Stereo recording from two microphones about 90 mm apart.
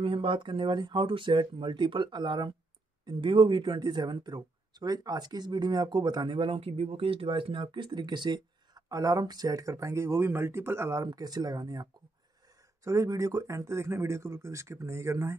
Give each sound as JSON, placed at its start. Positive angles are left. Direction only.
{"t": 0.0, "sound": "speech", "side_deg": -75}
{"t": 3.1, "sound": "speech", "side_deg": -70}
{"t": 8.8, "sound": "speech", "side_deg": -40}
{"t": 11.1, "sound": "speech", "side_deg": -45}